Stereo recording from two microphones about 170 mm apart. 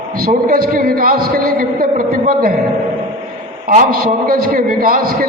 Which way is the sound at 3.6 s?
55° right (ahead or behind).